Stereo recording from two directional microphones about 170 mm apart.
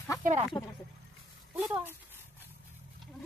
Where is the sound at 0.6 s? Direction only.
30° left (ahead or behind).